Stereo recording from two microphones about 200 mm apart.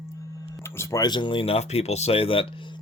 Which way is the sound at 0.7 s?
20° left (ahead or behind).